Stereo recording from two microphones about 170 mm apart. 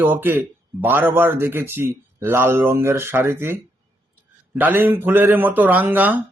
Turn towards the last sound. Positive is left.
turn(degrees=-10)  # may be behind; listen again after turning